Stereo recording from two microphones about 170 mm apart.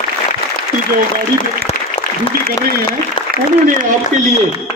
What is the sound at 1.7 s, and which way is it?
Applause, 40° left (ahead or behind).